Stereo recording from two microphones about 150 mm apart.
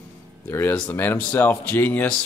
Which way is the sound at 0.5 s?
15° left (ahead or behind).